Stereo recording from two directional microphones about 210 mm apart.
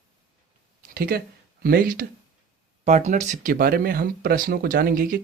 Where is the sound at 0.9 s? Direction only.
45° right (ahead or behind).